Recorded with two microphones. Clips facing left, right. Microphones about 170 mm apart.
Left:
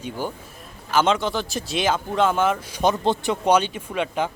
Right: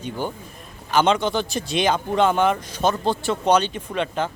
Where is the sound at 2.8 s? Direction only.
20° left (ahead or behind).